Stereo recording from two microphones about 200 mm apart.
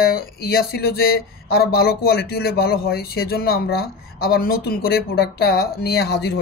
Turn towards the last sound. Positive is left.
turn(degrees=55)  # may be behind; listen again after turning